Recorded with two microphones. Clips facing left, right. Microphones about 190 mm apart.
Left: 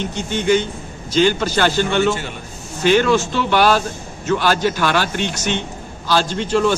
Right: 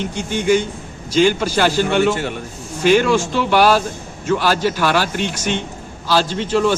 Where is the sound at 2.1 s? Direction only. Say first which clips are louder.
Right 5 dB; 60° right (ahead or behind).